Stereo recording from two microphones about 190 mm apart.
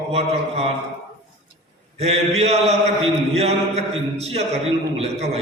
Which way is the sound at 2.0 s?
35° right (ahead or behind).